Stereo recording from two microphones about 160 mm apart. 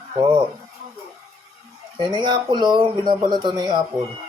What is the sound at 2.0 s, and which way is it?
Speech, 30° right (ahead or behind).